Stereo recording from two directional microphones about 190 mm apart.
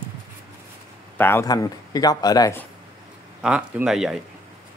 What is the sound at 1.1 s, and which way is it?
Speech, 10° left (ahead or behind).